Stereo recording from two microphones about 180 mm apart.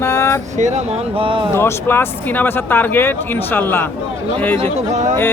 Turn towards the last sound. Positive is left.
turn(degrees=-40)  # may be behind; listen again after turning